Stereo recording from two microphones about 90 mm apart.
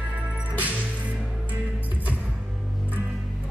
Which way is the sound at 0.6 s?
15° right (ahead or behind).